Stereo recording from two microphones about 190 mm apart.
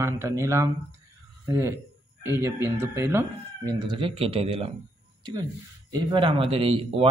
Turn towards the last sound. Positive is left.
turn(degrees=-30)  # may be behind; listen again after turning